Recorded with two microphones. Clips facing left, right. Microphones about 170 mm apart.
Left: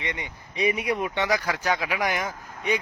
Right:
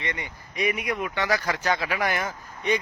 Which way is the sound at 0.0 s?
15° left (ahead or behind).